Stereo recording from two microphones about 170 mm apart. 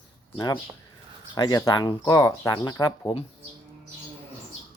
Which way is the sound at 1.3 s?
20° left (ahead or behind).